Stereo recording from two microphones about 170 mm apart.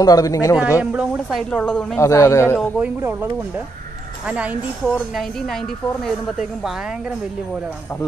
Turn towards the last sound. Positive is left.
turn(degrees=0)  # may be behind; listen again after turning